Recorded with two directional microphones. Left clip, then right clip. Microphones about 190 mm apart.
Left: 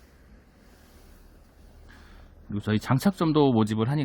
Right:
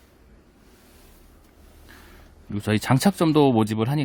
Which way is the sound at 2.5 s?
15° right (ahead or behind).